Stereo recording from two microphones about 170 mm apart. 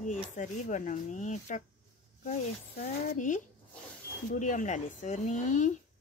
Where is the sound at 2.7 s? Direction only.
50° left (ahead or behind).